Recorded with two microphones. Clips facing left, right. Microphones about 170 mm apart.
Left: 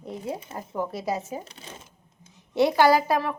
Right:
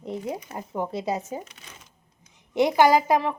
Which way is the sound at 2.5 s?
20° right (ahead or behind).